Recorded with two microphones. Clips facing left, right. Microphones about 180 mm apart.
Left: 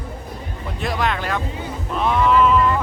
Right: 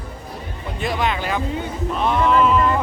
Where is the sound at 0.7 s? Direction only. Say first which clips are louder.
Right 1 dB; centre (ahead or behind).